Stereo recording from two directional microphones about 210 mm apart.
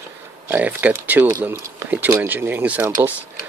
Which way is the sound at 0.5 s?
5° right (ahead or behind).